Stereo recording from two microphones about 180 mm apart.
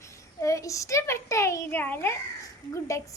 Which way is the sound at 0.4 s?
20° left (ahead or behind).